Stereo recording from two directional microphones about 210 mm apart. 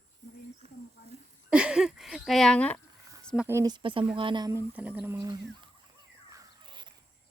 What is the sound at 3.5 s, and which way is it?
Speech, 15° right (ahead or behind).